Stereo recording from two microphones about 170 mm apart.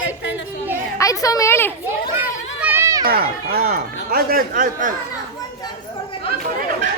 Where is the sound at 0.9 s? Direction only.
20° left (ahead or behind).